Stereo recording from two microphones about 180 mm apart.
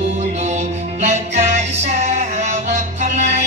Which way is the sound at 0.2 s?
40° right (ahead or behind).